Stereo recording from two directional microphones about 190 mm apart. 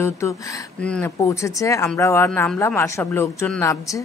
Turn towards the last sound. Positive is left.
turn(degrees=15)  # may be behind; listen again after turning